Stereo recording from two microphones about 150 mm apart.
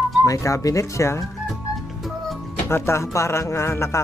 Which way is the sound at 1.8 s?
Centre (ahead or behind).